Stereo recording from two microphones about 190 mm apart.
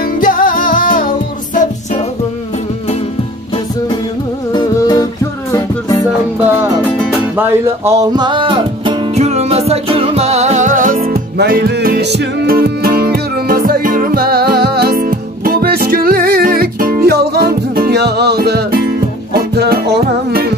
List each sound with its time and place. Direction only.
0.2 s music: 45° left (ahead or behind)
4.5 s music: 20° left (ahead or behind)
6.4 s music: 10° right (ahead or behind); by 11.1 s 45° right (ahead or behind)
11.3 s music: 55° right (ahead or behind)